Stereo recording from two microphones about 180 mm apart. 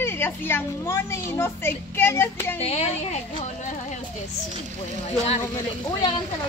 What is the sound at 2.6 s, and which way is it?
Speech, 35° left (ahead or behind).